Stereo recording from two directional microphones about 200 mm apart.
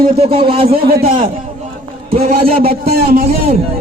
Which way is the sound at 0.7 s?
45° right (ahead or behind).